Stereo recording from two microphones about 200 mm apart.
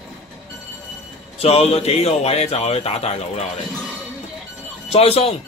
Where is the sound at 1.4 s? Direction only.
30° left (ahead or behind).